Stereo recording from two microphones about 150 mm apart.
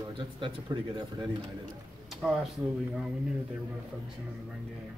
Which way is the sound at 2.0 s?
Centre (ahead or behind).